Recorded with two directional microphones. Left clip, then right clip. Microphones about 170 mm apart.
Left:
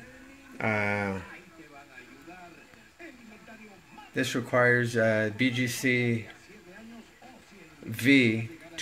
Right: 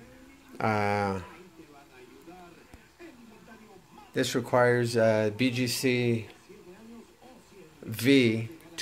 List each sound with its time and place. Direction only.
0.6 s speech: 15° right (ahead or behind)
4.1 s speech: 10° right (ahead or behind)
7.9 s speech: 10° right (ahead or behind)